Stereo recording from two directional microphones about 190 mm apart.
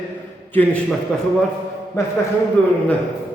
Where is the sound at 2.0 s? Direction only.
15° left (ahead or behind).